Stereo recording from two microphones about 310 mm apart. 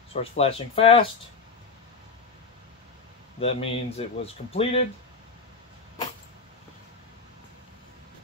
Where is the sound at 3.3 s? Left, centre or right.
Centre.